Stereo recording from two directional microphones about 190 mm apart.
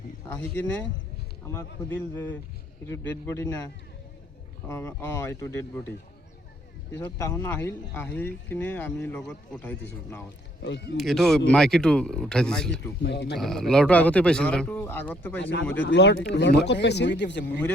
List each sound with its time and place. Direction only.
0.3 s speech: 10° left (ahead or behind)
4.7 s speech: 15° left (ahead or behind)
6.9 s speech: 15° left (ahead or behind)
10.6 s speech: 65° left (ahead or behind)
10.9 s speech: centre (ahead or behind)
13.0 s speech: 60° left (ahead or behind)
13.4 s speech: centre (ahead or behind)
15.4 s speech: 70° left (ahead or behind)